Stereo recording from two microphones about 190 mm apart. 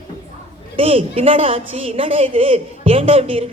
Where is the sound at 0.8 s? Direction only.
30° right (ahead or behind).